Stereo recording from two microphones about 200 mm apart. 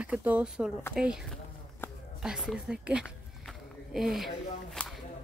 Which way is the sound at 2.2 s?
5° right (ahead or behind).